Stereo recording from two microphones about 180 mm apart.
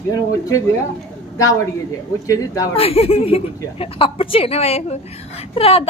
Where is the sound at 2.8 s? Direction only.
35° left (ahead or behind).